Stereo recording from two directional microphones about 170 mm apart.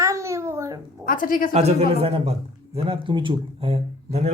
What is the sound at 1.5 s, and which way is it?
A man's voice, 40° right (ahead or behind).